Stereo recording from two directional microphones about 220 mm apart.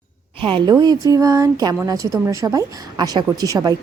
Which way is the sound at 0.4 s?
20° right (ahead or behind).